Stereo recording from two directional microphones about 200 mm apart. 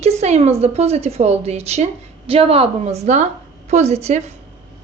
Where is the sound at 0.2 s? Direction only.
35° right (ahead or behind).